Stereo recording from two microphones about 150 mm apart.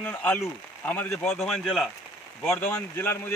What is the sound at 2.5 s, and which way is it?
Speech, 15° left (ahead or behind).